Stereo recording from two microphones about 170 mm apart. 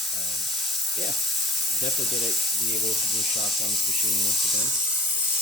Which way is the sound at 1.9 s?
Centre (ahead or behind).